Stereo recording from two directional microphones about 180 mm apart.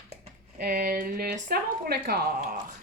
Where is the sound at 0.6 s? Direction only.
55° right (ahead or behind).